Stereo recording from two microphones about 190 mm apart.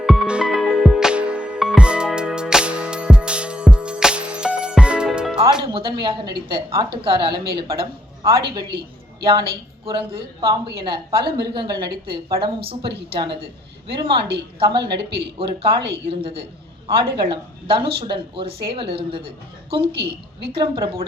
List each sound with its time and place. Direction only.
0.0 s music: 5° right (ahead or behind)
5.4 s a woman's voice: 25° right (ahead or behind)
9.2 s a woman's voice: 30° right (ahead or behind)
19.8 s a woman's voice: 55° right (ahead or behind)
20.5 s a woman's voice: 25° right (ahead or behind)